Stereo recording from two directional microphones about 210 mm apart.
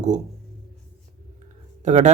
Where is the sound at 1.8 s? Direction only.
35° right (ahead or behind).